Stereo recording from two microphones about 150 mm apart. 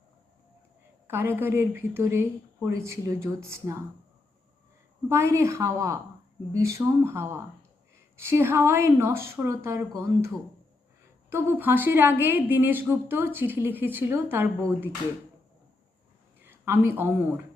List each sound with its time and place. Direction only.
1.0 s speech: 15° right (ahead or behind)
5.0 s a woman's voice: 20° right (ahead or behind)
16.4 s a woman's voice: 15° right (ahead or behind)